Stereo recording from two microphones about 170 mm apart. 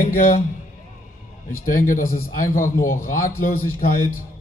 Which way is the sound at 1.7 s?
50° left (ahead or behind).